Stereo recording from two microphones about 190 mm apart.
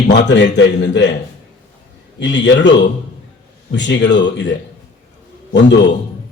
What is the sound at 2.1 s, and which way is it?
A man's voice, 70° left (ahead or behind).